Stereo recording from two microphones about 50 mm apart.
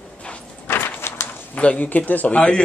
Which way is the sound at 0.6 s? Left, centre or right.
Left.